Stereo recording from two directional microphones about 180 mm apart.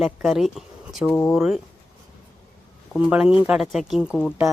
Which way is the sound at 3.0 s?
5° right (ahead or behind).